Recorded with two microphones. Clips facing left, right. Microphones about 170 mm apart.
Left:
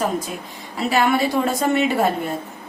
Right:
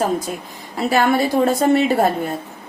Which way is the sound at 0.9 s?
40° right (ahead or behind).